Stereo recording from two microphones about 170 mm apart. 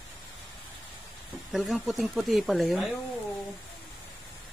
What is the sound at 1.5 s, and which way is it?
Speech, 5° right (ahead or behind).